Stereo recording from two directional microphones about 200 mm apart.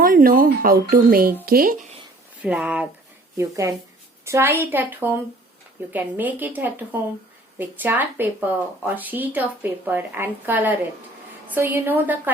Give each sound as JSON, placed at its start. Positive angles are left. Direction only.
{"t": 0.0, "sound": "speech", "side_deg": -45}
{"t": 2.4, "sound": "a woman's voice", "side_deg": -5}